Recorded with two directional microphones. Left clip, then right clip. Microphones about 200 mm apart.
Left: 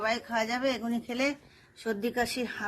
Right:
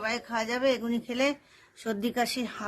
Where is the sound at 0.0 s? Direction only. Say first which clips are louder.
Left 1 dB; 10° right (ahead or behind).